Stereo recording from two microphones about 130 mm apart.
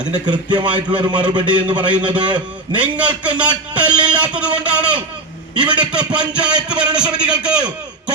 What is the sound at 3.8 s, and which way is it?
A man's voice, 10° right (ahead or behind).